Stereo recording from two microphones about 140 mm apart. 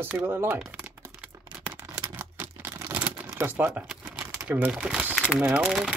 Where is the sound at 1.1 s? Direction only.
10° right (ahead or behind).